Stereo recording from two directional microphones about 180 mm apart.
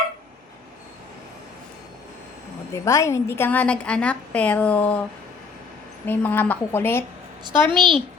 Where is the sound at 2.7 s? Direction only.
15° left (ahead or behind).